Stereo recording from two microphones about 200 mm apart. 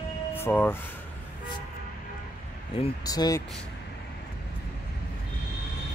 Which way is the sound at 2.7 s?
25° left (ahead or behind).